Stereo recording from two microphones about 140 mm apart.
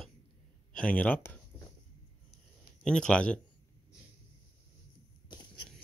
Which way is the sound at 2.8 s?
5° left (ahead or behind).